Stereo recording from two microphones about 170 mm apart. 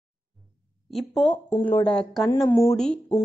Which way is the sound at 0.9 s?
5° left (ahead or behind).